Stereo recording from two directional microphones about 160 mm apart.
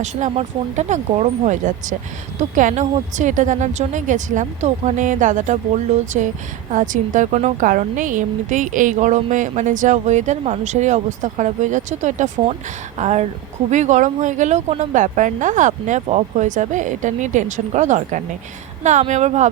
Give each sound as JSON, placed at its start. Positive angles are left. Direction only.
{"t": 0.0, "sound": "a woman's voice", "side_deg": -45}